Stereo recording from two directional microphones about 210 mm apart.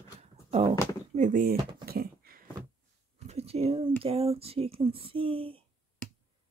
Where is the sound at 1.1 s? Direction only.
35° right (ahead or behind).